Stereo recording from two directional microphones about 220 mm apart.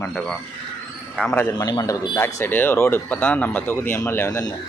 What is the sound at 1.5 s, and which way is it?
Speech, 15° left (ahead or behind).